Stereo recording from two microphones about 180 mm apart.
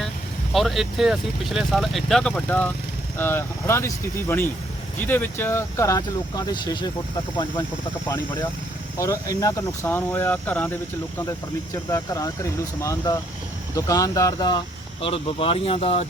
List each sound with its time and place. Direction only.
0.5 s speech: centre (ahead or behind); by 6.9 s 25° left (ahead or behind)
9.0 s speech: 20° left (ahead or behind)
11.9 s speech: 20° left (ahead or behind)
15.0 s speech: 30° left (ahead or behind)